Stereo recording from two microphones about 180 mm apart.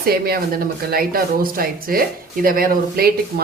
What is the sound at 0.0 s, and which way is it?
A woman's voice, 55° right (ahead or behind).